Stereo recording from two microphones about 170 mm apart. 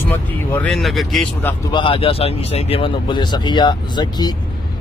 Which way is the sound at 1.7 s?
30° left (ahead or behind).